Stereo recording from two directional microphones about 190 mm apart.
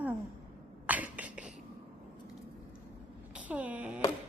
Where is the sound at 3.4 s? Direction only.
5° right (ahead or behind).